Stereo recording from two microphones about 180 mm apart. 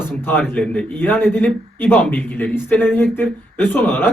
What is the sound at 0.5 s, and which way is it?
A man's voice, 5° left (ahead or behind).